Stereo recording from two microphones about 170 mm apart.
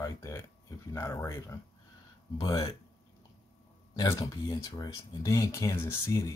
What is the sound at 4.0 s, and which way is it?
Speech, 20° left (ahead or behind).